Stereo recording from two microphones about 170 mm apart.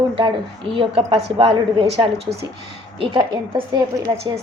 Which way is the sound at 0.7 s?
35° right (ahead or behind).